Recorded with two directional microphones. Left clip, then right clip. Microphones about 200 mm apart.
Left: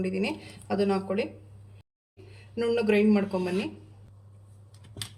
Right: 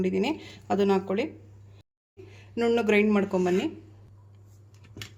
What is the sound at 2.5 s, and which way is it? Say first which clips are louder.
Speech: right 2 dB; 40° right (ahead or behind).